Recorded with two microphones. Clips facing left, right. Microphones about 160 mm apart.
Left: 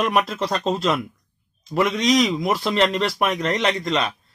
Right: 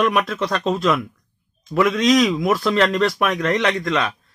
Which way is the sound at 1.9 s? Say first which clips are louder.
Right 3 dB; 20° left (ahead or behind).